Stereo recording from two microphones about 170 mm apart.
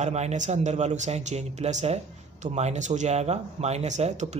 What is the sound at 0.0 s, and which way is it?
Speech, 40° right (ahead or behind).